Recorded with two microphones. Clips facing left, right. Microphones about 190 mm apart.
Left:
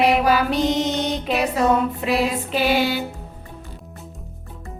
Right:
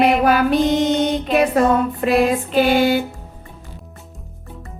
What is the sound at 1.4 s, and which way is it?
Speech, 50° right (ahead or behind).